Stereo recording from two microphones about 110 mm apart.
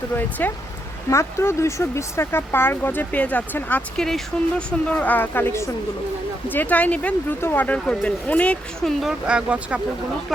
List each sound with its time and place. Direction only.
0.2 s speech: 15° left (ahead or behind)
8.8 s speech: centre (ahead or behind)